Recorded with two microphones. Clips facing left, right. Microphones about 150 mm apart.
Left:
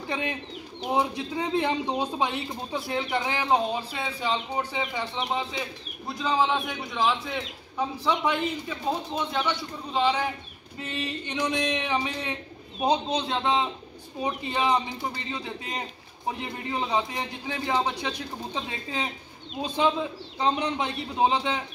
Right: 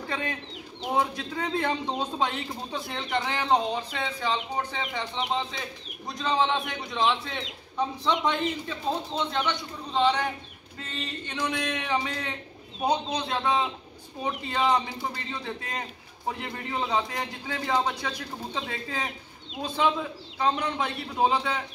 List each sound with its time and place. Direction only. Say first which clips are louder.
0.1 s a man's voice: left 3 dB; 20° left (ahead or behind)
6.0 s a man's voice: left 1 dB; 5° left (ahead or behind)
20.3 s speech: left 1 dB; 20° left (ahead or behind)